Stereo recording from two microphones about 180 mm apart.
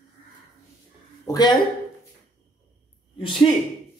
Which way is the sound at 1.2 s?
20° left (ahead or behind).